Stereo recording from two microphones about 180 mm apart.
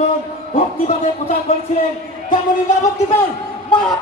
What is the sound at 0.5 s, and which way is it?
Speech, 35° left (ahead or behind).